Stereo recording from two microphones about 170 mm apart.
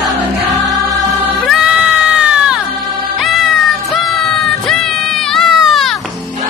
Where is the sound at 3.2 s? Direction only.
Centre (ahead or behind).